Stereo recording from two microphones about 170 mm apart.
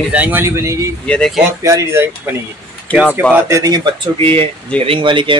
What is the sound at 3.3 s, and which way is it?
Speech, 15° right (ahead or behind).